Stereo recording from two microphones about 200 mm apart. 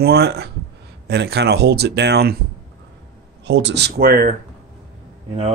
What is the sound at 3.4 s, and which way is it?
Speech, 60° right (ahead or behind).